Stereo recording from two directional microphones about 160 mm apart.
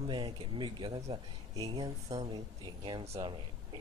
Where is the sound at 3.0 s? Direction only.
40° right (ahead or behind).